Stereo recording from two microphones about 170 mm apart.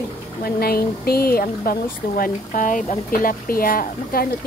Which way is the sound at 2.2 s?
50° left (ahead or behind).